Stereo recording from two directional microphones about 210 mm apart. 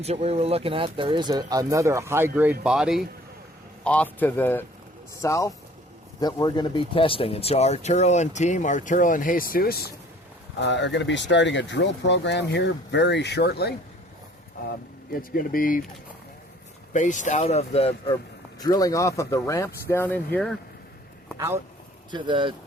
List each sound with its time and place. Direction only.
0.0 s speech: 30° right (ahead or behind); by 9.9 s 45° left (ahead or behind)
10.6 s speech: 60° left (ahead or behind)
15.1 s speech: 45° left (ahead or behind)
16.9 s speech: 35° left (ahead or behind)
18.6 s speech: 15° left (ahead or behind)
21.3 s a man's voice: 10° right (ahead or behind)
22.1 s speech: 20° right (ahead or behind)